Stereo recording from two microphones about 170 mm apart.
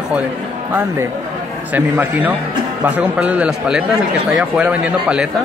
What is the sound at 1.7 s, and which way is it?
A man's voice, 10° right (ahead or behind).